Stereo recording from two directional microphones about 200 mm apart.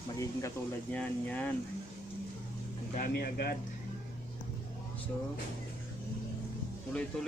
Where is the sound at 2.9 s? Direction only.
45° left (ahead or behind).